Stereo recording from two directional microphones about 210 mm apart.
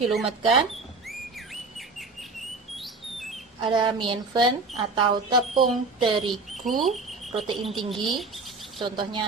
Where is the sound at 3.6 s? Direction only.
25° right (ahead or behind).